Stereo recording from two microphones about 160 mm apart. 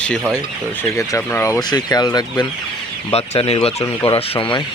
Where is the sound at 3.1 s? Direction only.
40° left (ahead or behind).